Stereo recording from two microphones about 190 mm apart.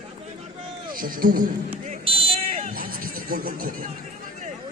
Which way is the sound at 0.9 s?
50° right (ahead or behind).